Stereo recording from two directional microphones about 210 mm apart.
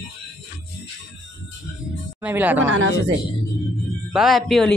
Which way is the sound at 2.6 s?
65° right (ahead or behind).